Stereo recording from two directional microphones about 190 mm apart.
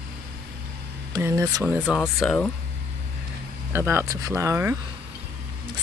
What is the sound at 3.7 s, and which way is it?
Speech, 10° right (ahead or behind).